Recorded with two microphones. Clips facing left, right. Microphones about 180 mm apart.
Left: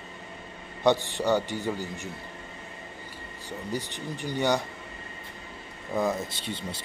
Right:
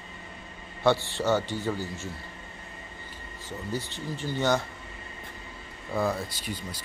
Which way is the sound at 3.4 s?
15° left (ahead or behind).